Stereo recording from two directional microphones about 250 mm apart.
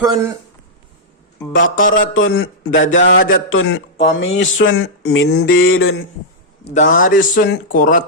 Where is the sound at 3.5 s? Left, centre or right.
Left.